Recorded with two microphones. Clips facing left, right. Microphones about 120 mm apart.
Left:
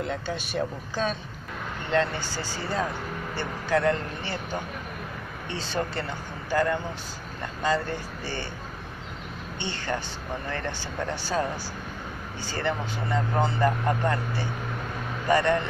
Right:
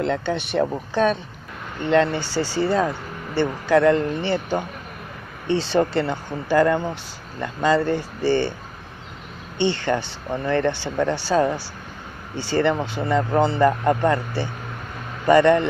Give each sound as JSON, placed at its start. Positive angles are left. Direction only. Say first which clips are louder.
{"t": 0.0, "sound": "speech", "louder": "right 8 dB", "side_deg": -70}
{"t": 1.9, "sound": "speech", "louder": "right 7 dB", "side_deg": -75}
{"t": 7.6, "sound": "speech", "louder": "right 7 dB", "side_deg": -80}
{"t": 9.6, "sound": "speech", "louder": "right 10 dB", "side_deg": -75}